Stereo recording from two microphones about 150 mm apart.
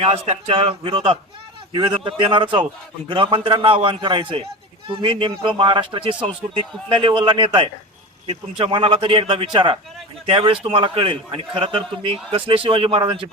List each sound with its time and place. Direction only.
0.0 s a man's voice: 40° right (ahead or behind)